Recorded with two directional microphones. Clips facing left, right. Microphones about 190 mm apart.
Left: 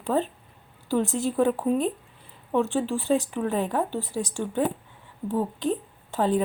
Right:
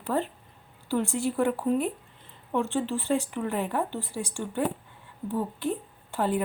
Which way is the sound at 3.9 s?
15° right (ahead or behind).